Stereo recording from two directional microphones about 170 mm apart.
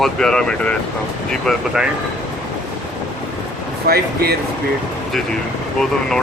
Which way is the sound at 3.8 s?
65° right (ahead or behind).